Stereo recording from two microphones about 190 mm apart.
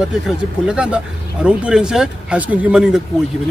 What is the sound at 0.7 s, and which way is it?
Speech, 5° right (ahead or behind).